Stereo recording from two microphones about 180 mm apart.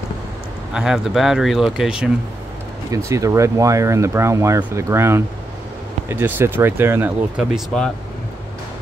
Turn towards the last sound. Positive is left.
turn(degrees=0)  # may be behind; listen again after turning